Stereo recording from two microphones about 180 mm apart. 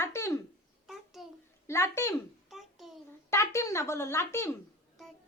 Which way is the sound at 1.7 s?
15° left (ahead or behind).